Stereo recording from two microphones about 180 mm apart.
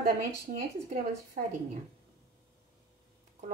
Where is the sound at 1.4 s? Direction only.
45° right (ahead or behind).